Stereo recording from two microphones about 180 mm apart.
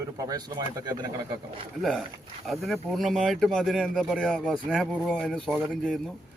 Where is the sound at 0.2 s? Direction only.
20° right (ahead or behind).